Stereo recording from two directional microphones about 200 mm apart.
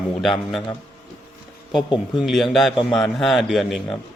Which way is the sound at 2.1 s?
Centre (ahead or behind).